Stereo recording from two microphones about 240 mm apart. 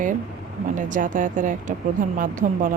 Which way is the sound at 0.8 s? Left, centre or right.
Right.